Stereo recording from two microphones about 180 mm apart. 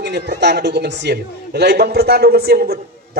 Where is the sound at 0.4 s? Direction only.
70° right (ahead or behind).